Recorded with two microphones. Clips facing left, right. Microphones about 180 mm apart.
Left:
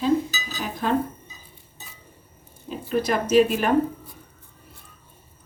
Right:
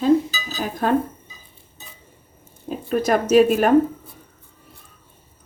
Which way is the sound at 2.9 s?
45° right (ahead or behind).